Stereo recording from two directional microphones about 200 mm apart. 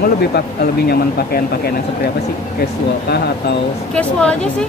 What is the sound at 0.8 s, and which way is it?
Speech, 50° left (ahead or behind).